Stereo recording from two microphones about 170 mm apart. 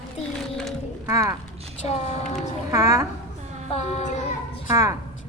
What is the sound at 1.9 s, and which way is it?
Music, 40° left (ahead or behind).